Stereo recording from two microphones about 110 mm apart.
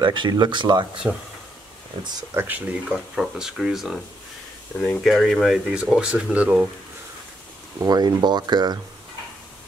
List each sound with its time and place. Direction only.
0.0 s speech: 45° right (ahead or behind)
1.0 s speech: 10° right (ahead or behind)
2.3 s speech: 15° right (ahead or behind)
2.9 s speech: 5° right (ahead or behind)
5.0 s speech: centre (ahead or behind)
7.8 s speech: 35° right (ahead or behind)